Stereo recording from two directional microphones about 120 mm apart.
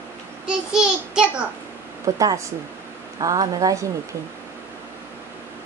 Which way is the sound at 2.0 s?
30° right (ahead or behind).